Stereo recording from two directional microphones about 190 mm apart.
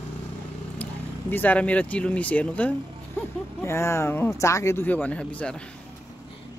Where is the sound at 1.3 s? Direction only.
10° left (ahead or behind).